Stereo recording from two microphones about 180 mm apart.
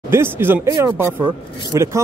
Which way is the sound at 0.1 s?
10° right (ahead or behind).